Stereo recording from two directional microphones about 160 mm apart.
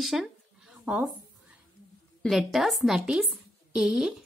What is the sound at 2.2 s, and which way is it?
A woman's voice, centre (ahead or behind).